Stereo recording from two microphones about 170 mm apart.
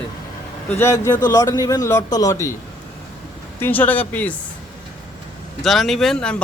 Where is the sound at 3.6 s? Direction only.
10° left (ahead or behind).